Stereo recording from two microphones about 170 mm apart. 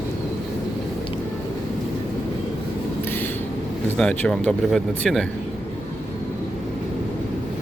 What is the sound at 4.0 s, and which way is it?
Speech, 5° left (ahead or behind).